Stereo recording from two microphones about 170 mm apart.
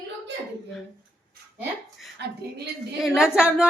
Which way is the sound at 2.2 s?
85° right.